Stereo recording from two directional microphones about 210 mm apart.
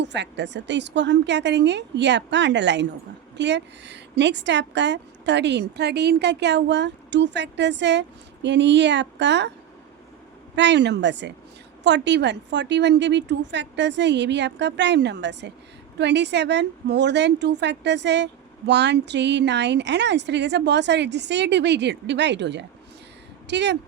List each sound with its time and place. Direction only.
0.0 s a woman's voice: 55° right (ahead or behind)
10.5 s a woman's voice: 55° right (ahead or behind)